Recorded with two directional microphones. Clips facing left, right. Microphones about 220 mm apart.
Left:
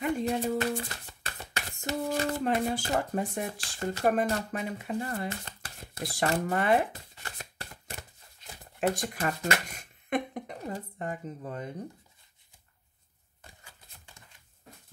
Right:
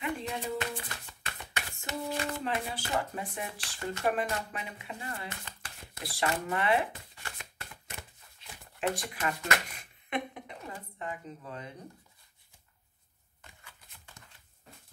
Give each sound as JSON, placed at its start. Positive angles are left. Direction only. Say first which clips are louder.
{"t": 0.0, "sound": "speech", "louder": "left 7 dB", "side_deg": 40}
{"t": 6.0, "sound": "chopping", "louder": "left 4 dB", "side_deg": 40}
{"t": 13.4, "sound": "a sound", "louder": "left 2 dB", "side_deg": 35}